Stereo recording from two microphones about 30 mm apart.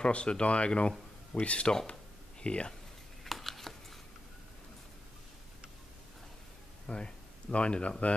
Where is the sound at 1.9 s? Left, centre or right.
Left.